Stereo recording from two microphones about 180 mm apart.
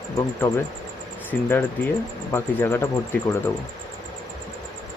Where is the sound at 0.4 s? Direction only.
15° left (ahead or behind).